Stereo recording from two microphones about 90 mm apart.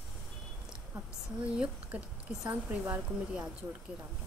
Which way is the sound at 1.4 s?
15° right (ahead or behind).